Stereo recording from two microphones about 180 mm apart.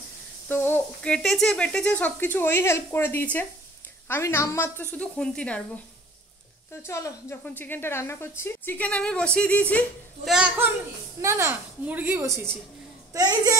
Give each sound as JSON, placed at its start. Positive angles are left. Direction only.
{"t": 0.5, "sound": "speech", "side_deg": 10}
{"t": 6.7, "sound": "speech", "side_deg": 15}
{"t": 10.3, "sound": "a woman's voice", "side_deg": -5}